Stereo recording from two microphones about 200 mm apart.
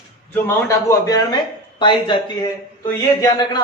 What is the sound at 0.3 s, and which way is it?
A man's voice, 15° left (ahead or behind).